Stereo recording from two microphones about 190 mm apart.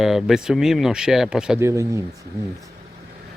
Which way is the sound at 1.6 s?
15° right (ahead or behind).